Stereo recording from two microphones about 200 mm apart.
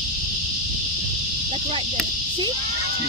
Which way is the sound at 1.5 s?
25° right (ahead or behind).